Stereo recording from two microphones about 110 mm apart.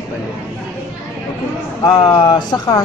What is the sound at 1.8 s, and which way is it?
Speech, 40° left (ahead or behind).